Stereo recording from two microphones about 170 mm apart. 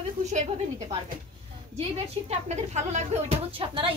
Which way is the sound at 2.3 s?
40° right (ahead or behind).